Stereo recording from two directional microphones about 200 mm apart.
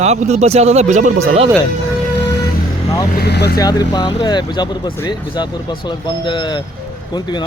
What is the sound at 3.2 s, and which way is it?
Speech, 55° left (ahead or behind).